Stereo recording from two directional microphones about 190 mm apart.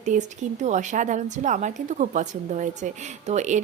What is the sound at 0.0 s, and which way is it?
Speech, 40° right (ahead or behind).